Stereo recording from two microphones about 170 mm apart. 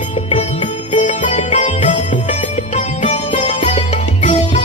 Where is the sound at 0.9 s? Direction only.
40° left (ahead or behind).